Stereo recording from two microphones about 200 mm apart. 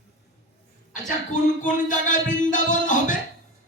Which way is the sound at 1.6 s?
40° left (ahead or behind).